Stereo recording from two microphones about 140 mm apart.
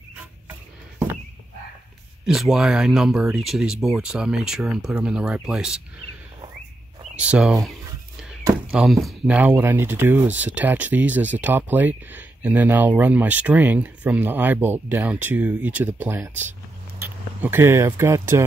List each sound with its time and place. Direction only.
2.2 s speech: centre (ahead or behind)
7.2 s speech: 5° right (ahead or behind)
8.7 s speech: centre (ahead or behind); by 18.4 s 20° right (ahead or behind)